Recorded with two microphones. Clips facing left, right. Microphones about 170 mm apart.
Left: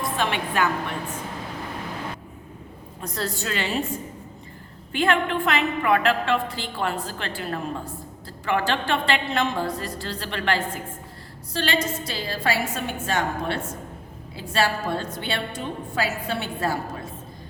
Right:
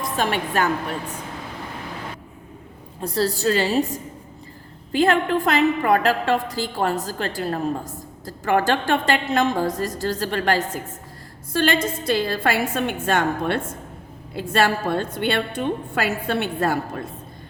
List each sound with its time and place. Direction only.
0.0 s a woman's voice: 45° right (ahead or behind)
3.0 s a woman's voice: 30° right (ahead or behind); by 16.7 s 55° right (ahead or behind)